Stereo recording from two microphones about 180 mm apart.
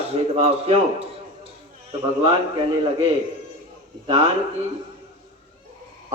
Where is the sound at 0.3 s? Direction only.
35° right (ahead or behind).